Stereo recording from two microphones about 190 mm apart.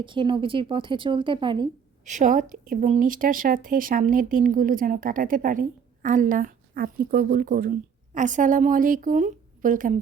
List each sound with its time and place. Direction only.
0.0 s speech: 25° right (ahead or behind)
2.0 s speech: 40° right (ahead or behind)